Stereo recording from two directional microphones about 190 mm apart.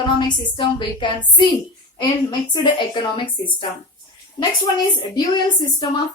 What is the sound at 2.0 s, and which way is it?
A woman's voice, 25° left (ahead or behind).